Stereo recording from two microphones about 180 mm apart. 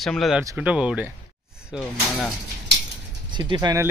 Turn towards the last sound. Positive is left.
turn(degrees=-20)  # may be behind; listen again after turning